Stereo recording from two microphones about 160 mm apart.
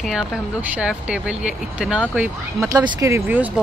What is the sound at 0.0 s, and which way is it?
Speech, 5° right (ahead or behind).